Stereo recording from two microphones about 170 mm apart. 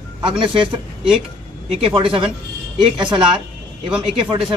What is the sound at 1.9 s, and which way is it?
A woman's voice, 30° right (ahead or behind).